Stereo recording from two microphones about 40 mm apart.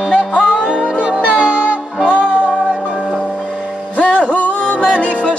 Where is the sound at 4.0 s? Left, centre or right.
Left.